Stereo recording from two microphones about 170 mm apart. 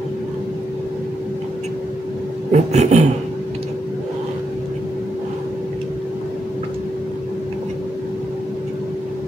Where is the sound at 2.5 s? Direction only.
40° right (ahead or behind).